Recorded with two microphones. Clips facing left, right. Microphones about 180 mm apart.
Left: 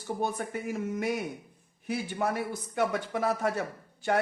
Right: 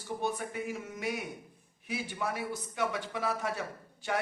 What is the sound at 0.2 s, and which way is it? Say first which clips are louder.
Speech: left 1 dB; 50° left (ahead or behind).